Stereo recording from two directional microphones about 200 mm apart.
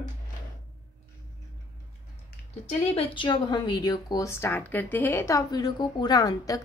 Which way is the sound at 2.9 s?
25° left (ahead or behind).